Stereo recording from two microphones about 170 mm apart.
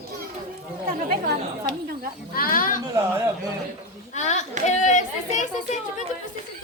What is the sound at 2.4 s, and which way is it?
Speech, 55° left (ahead or behind).